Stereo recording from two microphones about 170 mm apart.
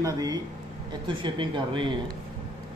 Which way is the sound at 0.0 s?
20° right (ahead or behind).